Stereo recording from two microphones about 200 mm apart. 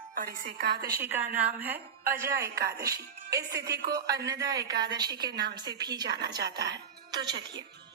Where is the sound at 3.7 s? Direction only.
55° right (ahead or behind).